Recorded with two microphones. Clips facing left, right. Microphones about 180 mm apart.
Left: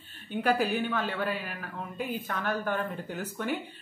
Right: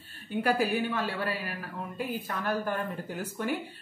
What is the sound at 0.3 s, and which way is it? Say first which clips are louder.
Speech: even; 10° right (ahead or behind).